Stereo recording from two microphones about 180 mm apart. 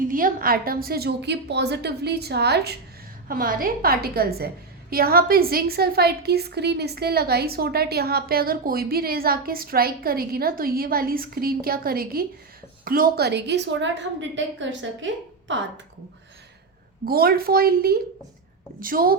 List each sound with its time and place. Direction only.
0.1 s a woman's voice: 50° right (ahead or behind); by 2.7 s 65° right (ahead or behind)
3.2 s a woman's voice: 50° right (ahead or behind); by 15.6 s 90° right
17.1 s a woman's voice: 60° right (ahead or behind)